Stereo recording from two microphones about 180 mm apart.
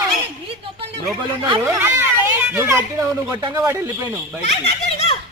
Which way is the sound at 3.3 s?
20° right (ahead or behind).